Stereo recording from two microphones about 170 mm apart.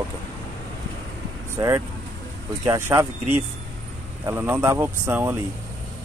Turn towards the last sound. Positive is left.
turn(degrees=-10)  # may be behind; listen again after turning